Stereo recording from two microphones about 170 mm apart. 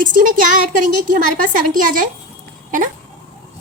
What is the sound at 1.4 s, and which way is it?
Speech, 55° right (ahead or behind).